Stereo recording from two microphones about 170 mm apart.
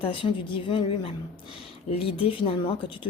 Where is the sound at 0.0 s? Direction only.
30° left (ahead or behind).